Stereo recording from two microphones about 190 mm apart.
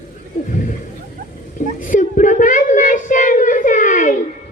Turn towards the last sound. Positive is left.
turn(degrees=40)  # may be behind; listen again after turning